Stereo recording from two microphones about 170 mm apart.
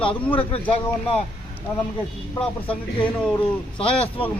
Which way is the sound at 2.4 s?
5° left (ahead or behind).